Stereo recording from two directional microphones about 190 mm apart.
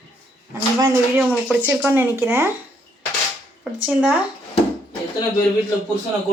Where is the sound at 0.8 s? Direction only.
10° right (ahead or behind).